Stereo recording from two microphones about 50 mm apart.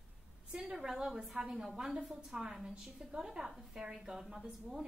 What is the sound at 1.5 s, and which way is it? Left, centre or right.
A woman's voice, centre.